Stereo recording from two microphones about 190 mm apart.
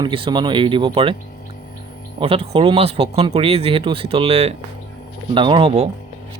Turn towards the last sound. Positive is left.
turn(degrees=-35)  # may be behind; listen again after turning